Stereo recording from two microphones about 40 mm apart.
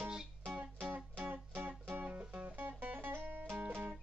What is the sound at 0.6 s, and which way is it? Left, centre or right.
Music, right.